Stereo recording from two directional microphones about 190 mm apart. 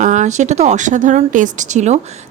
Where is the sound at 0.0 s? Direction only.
40° right (ahead or behind).